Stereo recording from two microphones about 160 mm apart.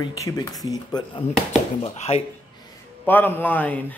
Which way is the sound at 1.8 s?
40° left (ahead or behind).